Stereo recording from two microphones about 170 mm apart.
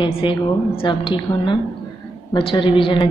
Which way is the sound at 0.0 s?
30° left (ahead or behind).